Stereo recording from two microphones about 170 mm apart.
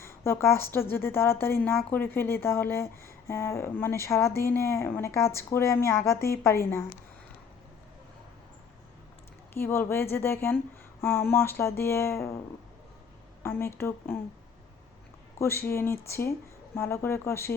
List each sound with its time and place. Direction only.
0.0 s a woman's voice: 15° left (ahead or behind)
9.6 s a woman's voice: 15° left (ahead or behind)
13.4 s a woman's voice: 15° left (ahead or behind)
15.4 s a woman's voice: 15° left (ahead or behind)